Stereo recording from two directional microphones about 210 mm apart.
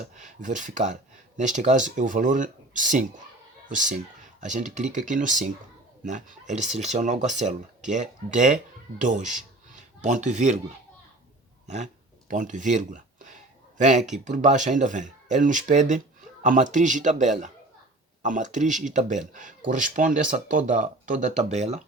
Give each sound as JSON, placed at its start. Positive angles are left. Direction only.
{"t": 0.0, "sound": "speech", "side_deg": -35}
{"t": 12.3, "sound": "speech", "side_deg": -35}